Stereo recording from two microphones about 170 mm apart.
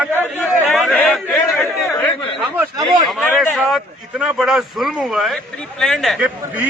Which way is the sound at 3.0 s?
Centre (ahead or behind).